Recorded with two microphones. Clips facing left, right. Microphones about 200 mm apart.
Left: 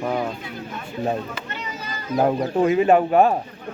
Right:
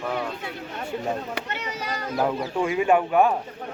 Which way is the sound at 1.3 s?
70° right (ahead or behind).